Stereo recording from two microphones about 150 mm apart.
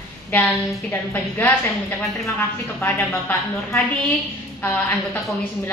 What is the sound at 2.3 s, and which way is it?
Speech, 15° left (ahead or behind).